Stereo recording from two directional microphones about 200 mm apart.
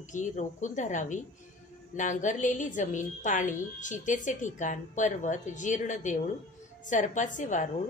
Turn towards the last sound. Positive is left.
turn(degrees=40)  # may be behind; listen again after turning